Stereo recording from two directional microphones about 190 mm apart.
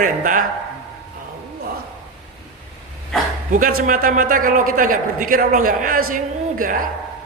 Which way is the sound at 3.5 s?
45° right (ahead or behind).